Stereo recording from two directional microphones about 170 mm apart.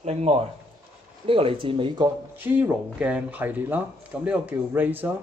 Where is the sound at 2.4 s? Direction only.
10° right (ahead or behind).